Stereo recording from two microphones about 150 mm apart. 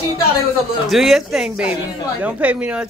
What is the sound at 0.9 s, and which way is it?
A woman's voice, centre (ahead or behind).